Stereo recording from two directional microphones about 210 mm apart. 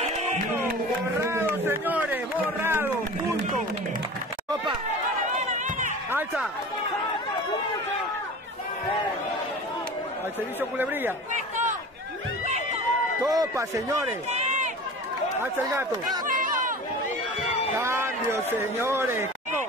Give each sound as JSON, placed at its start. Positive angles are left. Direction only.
{"t": 1.2, "sound": "speech", "side_deg": -10}
{"t": 5.5, "sound": "run", "side_deg": -35}
{"t": 6.1, "sound": "speech", "side_deg": -5}
{"t": 10.8, "sound": "speech", "side_deg": -10}
{"t": 11.3, "sound": "a sound", "side_deg": -35}
{"t": 13.2, "sound": "speech", "side_deg": -15}
{"t": 14.3, "sound": "run", "side_deg": -35}
{"t": 15.4, "sound": "speech", "side_deg": -10}
{"t": 16.3, "sound": "a sound", "side_deg": -40}
{"t": 17.7, "sound": "speech", "side_deg": -10}